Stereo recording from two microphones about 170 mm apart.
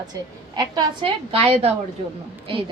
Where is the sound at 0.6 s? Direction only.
30° right (ahead or behind).